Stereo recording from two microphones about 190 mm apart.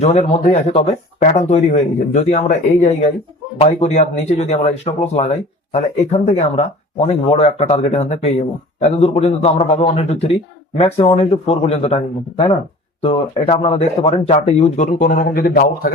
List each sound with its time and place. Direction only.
0.0 s speech: 35° left (ahead or behind)